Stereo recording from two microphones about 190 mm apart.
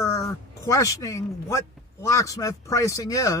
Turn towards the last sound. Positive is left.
turn(degrees=20)  # may be behind; listen again after turning